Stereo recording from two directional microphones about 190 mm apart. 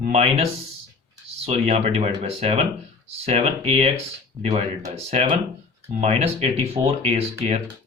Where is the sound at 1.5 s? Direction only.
35° right (ahead or behind).